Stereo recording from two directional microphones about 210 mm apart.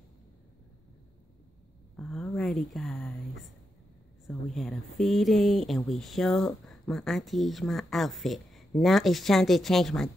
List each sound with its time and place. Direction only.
2.0 s a sound: 5° left (ahead or behind)
2.3 s speech: centre (ahead or behind)
4.3 s speech: centre (ahead or behind)